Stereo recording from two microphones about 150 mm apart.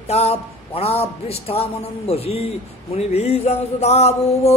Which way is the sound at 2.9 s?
45° left (ahead or behind).